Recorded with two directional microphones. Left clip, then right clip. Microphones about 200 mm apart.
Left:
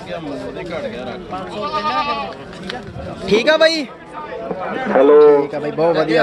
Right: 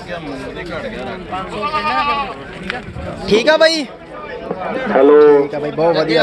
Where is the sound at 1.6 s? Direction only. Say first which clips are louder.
Right 2 dB; 40° right (ahead or behind).